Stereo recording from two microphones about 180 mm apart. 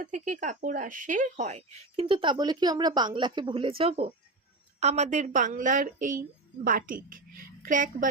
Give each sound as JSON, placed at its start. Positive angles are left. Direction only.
{"t": 0.0, "sound": "a woman's voice", "side_deg": -45}